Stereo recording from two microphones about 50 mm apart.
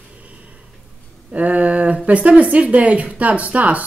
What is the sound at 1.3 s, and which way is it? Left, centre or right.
Speech, right.